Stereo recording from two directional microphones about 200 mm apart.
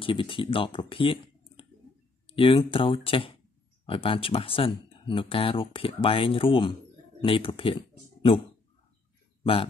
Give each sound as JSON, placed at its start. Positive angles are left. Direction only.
{"t": 0.0, "sound": "speech", "side_deg": 25}